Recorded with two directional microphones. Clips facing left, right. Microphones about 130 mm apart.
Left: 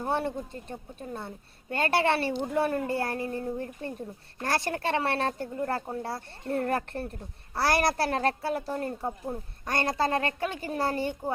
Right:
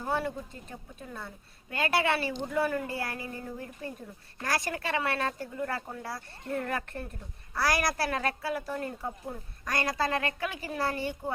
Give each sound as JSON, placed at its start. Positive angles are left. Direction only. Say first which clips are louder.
{"t": 0.0, "sound": "a child's voice", "louder": "left 2 dB", "side_deg": 25}